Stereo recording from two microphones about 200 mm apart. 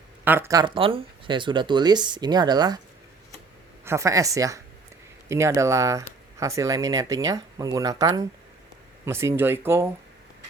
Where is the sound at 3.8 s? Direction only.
15° right (ahead or behind).